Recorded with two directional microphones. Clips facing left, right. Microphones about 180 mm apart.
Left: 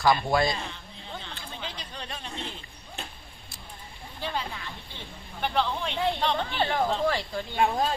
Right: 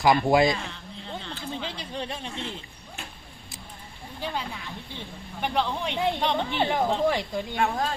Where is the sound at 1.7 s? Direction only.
25° right (ahead or behind).